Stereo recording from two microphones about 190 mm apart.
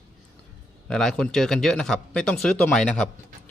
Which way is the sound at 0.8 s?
5° left (ahead or behind).